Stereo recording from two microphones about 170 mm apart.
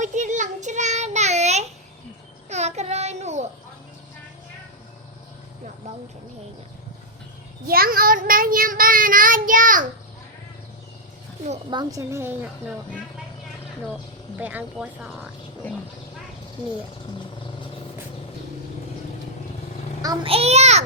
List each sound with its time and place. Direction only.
0.0 s child singing: 45° right (ahead or behind)
7.7 s child singing: 60° right (ahead or behind)
11.7 s speech: 25° right (ahead or behind)
14.3 s speech: 10° right (ahead or behind)
20.2 s a child's voice: 35° right (ahead or behind)